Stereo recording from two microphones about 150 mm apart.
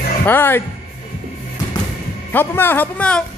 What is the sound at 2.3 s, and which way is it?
Speech, 15° left (ahead or behind).